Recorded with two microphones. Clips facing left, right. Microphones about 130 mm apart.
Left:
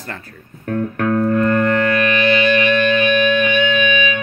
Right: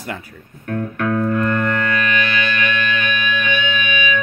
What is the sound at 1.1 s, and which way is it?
Music, 40° left (ahead or behind).